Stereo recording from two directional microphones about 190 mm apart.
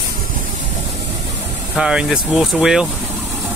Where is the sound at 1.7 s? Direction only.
5° right (ahead or behind).